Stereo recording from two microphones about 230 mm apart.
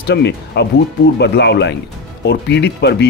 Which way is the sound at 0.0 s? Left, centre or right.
Left.